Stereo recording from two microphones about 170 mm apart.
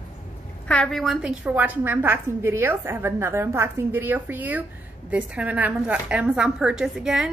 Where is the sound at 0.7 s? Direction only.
5° left (ahead or behind).